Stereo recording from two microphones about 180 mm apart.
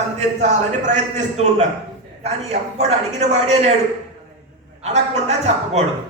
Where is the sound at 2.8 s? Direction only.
40° right (ahead or behind).